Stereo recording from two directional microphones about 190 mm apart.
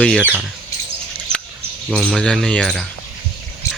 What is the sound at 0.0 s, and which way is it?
Speech, 5° left (ahead or behind).